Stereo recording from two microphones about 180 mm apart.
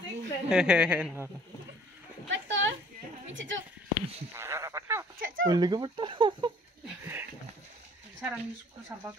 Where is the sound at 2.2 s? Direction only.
90° right.